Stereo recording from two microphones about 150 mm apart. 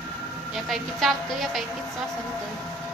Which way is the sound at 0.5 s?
Centre (ahead or behind).